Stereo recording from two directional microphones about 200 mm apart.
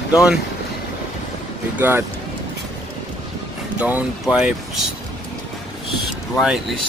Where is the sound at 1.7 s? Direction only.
10° right (ahead or behind).